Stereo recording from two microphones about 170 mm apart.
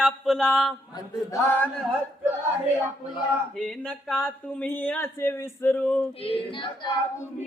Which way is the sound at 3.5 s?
5° left (ahead or behind).